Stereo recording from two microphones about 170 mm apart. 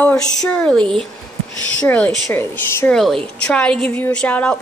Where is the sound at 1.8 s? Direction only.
10° left (ahead or behind).